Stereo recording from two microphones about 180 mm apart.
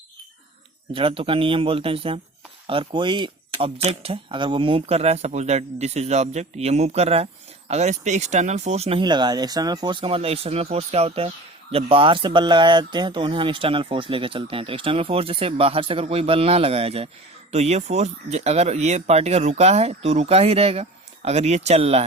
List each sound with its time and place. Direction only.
0.9 s speech: 30° right (ahead or behind)